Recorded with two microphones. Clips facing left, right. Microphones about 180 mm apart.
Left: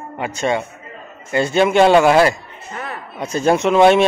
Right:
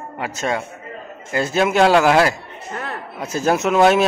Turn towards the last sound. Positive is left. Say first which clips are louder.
# left 3 dB
turn(degrees=-5)  # may be behind; listen again after turning